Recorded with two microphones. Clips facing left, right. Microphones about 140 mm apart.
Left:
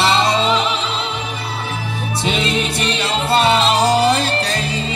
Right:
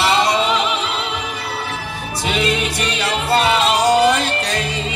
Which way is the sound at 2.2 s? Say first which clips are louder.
Right 1 dB; 25° left (ahead or behind).